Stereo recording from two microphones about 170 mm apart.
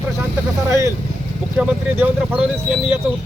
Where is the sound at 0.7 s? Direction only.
15° right (ahead or behind).